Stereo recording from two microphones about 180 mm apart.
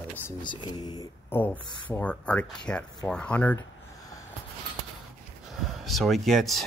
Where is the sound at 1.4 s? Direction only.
10° left (ahead or behind).